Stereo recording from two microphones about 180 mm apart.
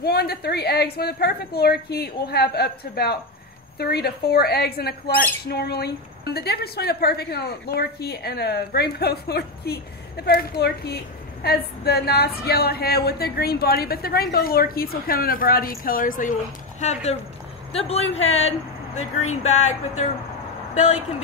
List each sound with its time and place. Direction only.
0.0 s speech: 60° left (ahead or behind); by 21.0 s 40° left (ahead or behind)